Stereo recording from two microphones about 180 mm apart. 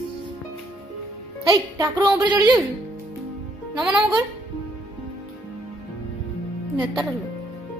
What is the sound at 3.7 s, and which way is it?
Speech, 5° right (ahead or behind).